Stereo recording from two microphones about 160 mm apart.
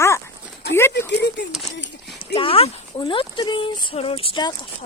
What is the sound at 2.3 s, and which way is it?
Speech, 35° left (ahead or behind).